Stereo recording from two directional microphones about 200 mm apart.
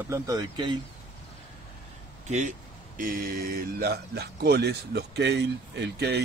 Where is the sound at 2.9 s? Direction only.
45° right (ahead or behind).